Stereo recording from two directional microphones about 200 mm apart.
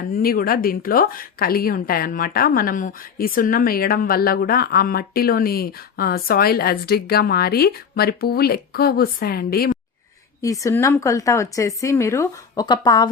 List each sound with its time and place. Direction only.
0.2 s a woman's voice: 45° left (ahead or behind)
10.4 s a woman's voice: 15° left (ahead or behind)